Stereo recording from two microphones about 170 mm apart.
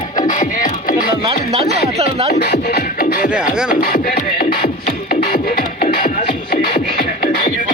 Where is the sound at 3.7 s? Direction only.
60° left (ahead or behind).